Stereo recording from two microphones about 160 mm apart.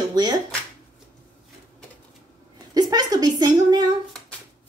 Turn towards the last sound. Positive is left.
turn(degrees=-25)  # may be behind; listen again after turning